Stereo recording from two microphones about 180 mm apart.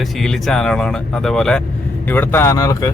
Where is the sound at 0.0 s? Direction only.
Centre (ahead or behind).